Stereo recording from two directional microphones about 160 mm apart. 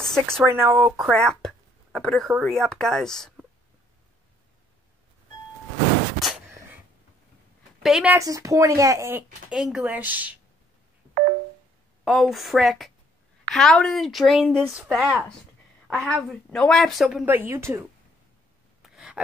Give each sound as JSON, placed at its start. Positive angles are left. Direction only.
{"t": 0.0, "sound": "a sound", "side_deg": 5}
{"t": 0.5, "sound": "speech", "side_deg": -15}
{"t": 0.9, "sound": "speech", "side_deg": 0}
{"t": 7.8, "sound": "speech", "side_deg": -5}
{"t": 8.2, "sound": "speech", "side_deg": -20}
{"t": 9.5, "sound": "speech", "side_deg": -5}
{"t": 12.0, "sound": "speech", "side_deg": 0}
{"t": 17.2, "sound": "speech", "side_deg": -15}
{"t": 18.8, "sound": "a sound", "side_deg": -5}